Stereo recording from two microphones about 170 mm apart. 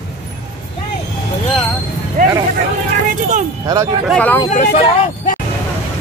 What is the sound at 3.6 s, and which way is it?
Speech, 20° right (ahead or behind).